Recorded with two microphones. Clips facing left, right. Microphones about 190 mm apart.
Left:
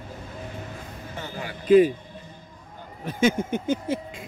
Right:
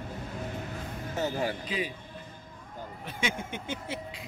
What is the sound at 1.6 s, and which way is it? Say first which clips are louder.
Speech: left 18 dB; 50° left (ahead or behind).